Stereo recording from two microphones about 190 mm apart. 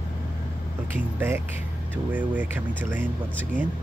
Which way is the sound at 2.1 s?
10° right (ahead or behind).